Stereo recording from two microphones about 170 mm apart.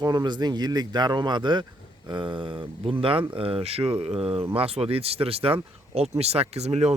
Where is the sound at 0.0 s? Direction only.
25° right (ahead or behind).